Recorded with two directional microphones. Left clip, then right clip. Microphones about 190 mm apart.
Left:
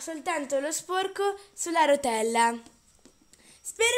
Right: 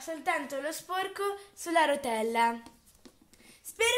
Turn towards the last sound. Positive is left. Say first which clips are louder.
# left 3 dB
turn(degrees=35)  # may be behind; listen again after turning